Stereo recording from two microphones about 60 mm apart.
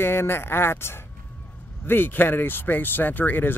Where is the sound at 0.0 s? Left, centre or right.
Left.